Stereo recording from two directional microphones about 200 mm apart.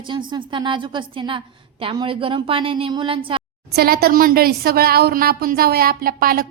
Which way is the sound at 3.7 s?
50° right (ahead or behind).